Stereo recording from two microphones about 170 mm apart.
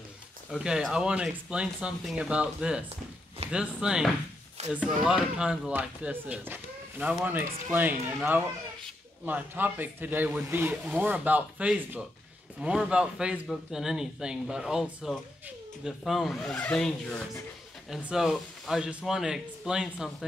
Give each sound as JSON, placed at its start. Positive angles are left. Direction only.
{"t": 0.5, "sound": "a man's voice", "side_deg": 0}
{"t": 4.6, "sound": "a sound", "side_deg": -40}
{"t": 5.0, "sound": "a man's voice", "side_deg": -5}